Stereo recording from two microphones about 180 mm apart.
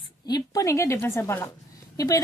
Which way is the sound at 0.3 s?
20° left (ahead or behind).